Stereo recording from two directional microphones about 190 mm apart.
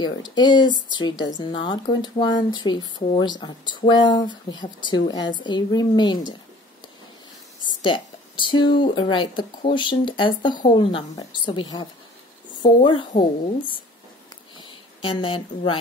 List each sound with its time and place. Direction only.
0.0 s a woman's voice: 20° left (ahead or behind)
7.8 s a woman's voice: 25° left (ahead or behind)
14.6 s speech: 25° left (ahead or behind)